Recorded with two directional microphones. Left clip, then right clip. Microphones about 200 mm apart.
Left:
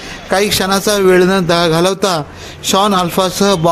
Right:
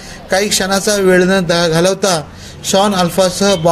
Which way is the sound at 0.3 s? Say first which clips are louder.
Left 1 dB; 35° left (ahead or behind).